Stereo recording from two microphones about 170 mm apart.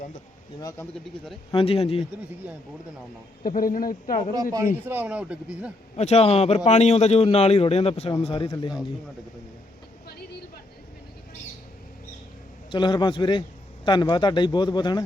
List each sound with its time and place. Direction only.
1.0 s speech: centre (ahead or behind)
1.5 s a man's voice: 35° left (ahead or behind)
3.4 s speech: 55° left (ahead or behind)
4.9 s speech: 10° right (ahead or behind)
6.0 s a man's voice: 40° left (ahead or behind); by 8.8 s 25° left (ahead or behind)
12.7 s speech: 25° left (ahead or behind)